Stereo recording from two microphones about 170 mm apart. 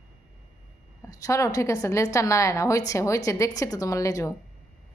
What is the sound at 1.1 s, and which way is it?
A woman's voice, 20° left (ahead or behind).